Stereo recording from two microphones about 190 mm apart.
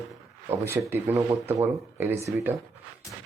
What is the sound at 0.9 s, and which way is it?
Speech, 10° right (ahead or behind).